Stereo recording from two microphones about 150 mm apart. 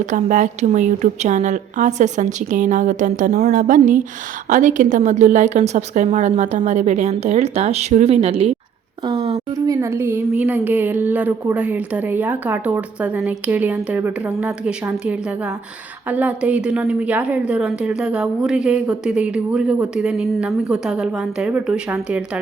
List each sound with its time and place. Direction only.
0.0 s a woman's voice: 55° right (ahead or behind)
9.6 s a woman's voice: 20° right (ahead or behind)